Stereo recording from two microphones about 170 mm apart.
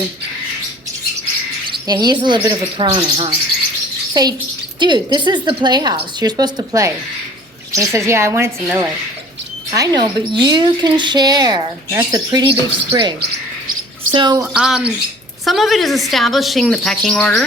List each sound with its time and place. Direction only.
1.6 s a woman's voice: 25° right (ahead or behind)
14.4 s speech: 5° right (ahead or behind)